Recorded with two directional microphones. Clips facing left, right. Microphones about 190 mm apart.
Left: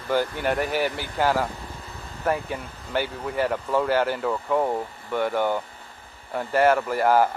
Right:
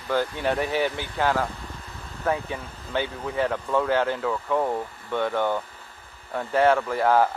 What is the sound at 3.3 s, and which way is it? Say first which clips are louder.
Speech: left 1 dB; 10° left (ahead or behind).